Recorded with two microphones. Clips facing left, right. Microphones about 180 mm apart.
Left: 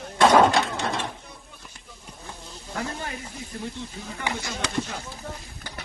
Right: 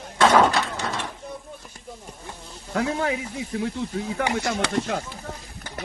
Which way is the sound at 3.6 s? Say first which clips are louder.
Right 8 dB; 90° right.